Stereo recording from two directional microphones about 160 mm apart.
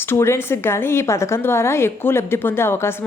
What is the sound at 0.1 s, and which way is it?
A woman's voice, 15° left (ahead or behind).